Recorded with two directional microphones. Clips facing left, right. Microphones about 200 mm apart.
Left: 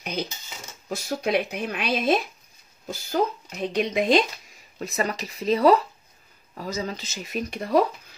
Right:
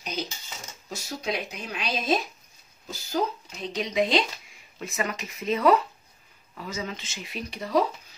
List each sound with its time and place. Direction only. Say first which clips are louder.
0.0 s speech: left 3 dB; 60° left (ahead or behind)